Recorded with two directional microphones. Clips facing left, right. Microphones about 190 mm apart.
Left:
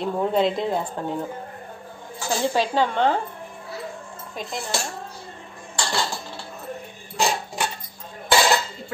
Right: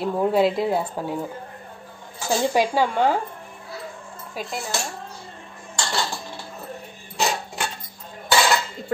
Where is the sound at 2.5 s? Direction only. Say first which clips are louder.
Even; 10° right (ahead or behind).